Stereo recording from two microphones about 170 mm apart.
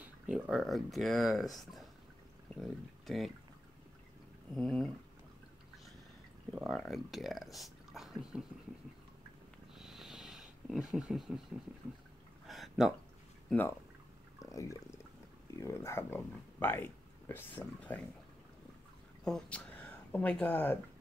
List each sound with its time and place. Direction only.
0.0 s speech: 5° right (ahead or behind)
4.6 s speech: 5° left (ahead or behind)
6.5 s speech: centre (ahead or behind)
9.8 s sniff: centre (ahead or behind)
10.7 s speech: 5° right (ahead or behind)
12.4 s a sound: centre (ahead or behind)
13.5 s speech: 10° left (ahead or behind)
14.4 s a sound: 20° left (ahead or behind)
15.5 s speech: 15° left (ahead or behind)
19.2 s speech: 5° left (ahead or behind)